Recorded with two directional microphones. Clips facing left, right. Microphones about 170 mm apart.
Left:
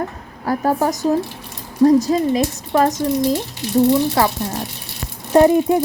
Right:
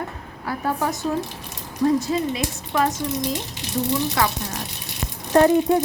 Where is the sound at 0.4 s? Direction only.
40° left (ahead or behind).